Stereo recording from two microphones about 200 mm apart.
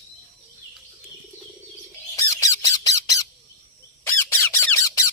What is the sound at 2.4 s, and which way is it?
Squawk, 15° left (ahead or behind).